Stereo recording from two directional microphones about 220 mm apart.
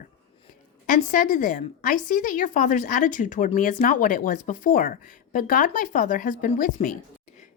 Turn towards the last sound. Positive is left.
turn(degrees=40)  # may be behind; listen again after turning